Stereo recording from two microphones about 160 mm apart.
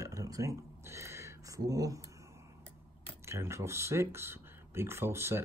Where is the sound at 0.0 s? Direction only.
20° right (ahead or behind).